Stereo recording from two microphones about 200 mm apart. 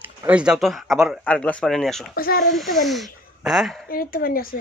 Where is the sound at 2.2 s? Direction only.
50° left (ahead or behind).